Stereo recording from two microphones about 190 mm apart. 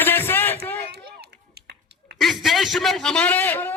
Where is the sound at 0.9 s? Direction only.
60° right (ahead or behind).